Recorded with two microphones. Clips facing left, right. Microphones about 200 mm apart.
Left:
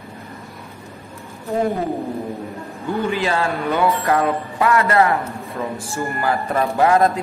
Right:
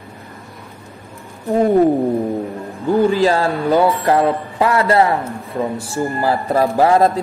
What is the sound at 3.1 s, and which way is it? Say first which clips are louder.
Speech: right 5 dB; 35° right (ahead or behind).